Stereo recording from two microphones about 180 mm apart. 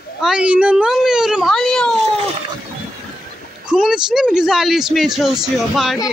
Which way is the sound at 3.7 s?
5° right (ahead or behind).